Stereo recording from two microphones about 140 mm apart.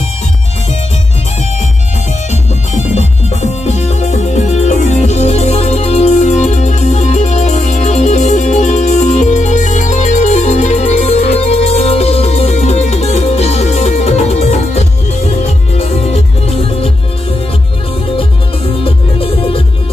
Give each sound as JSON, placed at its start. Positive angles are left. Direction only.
{"t": 3.6, "sound": "music", "side_deg": 50}
{"t": 18.9, "sound": "music", "side_deg": 40}